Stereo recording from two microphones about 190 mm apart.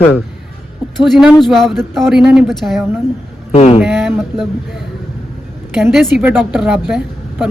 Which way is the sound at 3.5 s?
35° left (ahead or behind).